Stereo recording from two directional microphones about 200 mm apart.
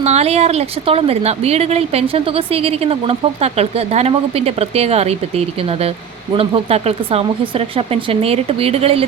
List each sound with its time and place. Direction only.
0.0 s speech: 30° right (ahead or behind)
6.3 s speech: 30° right (ahead or behind)